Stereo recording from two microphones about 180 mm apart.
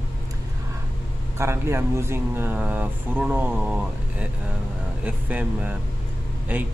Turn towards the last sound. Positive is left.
turn(degrees=-10)  # may be behind; listen again after turning